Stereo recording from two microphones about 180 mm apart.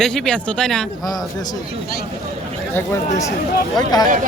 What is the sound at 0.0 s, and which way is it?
Speech, 5° left (ahead or behind).